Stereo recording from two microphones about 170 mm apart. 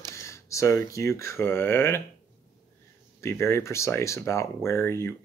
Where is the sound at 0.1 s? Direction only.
15° left (ahead or behind).